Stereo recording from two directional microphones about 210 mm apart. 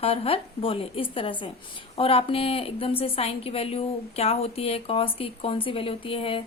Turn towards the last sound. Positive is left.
turn(degrees=25)  # may be behind; listen again after turning